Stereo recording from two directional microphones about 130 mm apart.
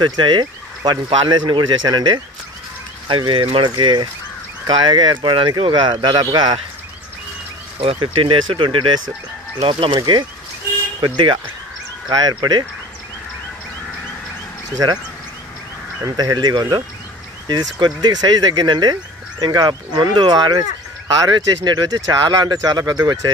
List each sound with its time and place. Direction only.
0.0 s speech: 35° right (ahead or behind)
7.8 s speech: 45° right (ahead or behind)
16.0 s speech: 30° right (ahead or behind)